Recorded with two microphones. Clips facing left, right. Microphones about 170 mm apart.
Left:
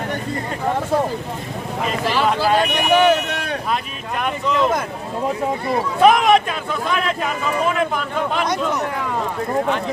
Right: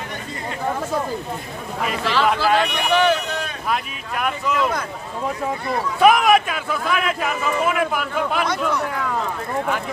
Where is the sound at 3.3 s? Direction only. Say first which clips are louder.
Left 3 dB; 70° left (ahead or behind).